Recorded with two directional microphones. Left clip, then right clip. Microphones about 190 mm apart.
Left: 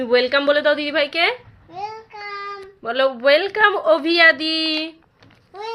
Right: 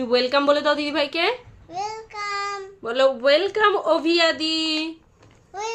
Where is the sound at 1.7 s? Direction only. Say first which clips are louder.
Right 1 dB; 15° right (ahead or behind).